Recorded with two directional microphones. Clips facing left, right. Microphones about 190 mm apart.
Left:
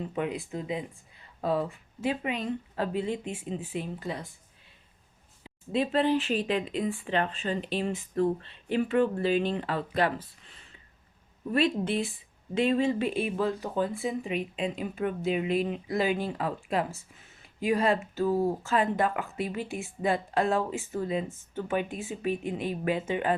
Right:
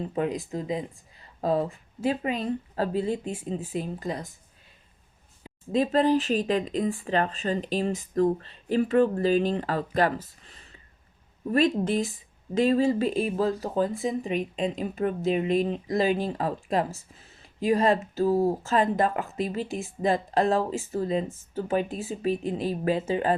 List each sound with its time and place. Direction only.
0.0 s speech: 40° right (ahead or behind)
5.4 s speech: 40° right (ahead or behind)